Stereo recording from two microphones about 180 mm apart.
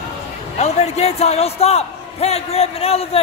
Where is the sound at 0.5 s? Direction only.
40° left (ahead or behind).